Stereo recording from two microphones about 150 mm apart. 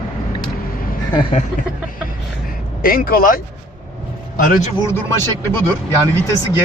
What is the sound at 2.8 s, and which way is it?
Speech, 70° left (ahead or behind).